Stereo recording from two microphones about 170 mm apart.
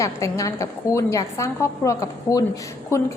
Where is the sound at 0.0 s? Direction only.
20° left (ahead or behind).